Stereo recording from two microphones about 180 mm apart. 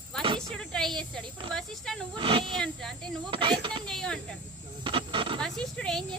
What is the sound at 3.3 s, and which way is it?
Speech, 30° right (ahead or behind).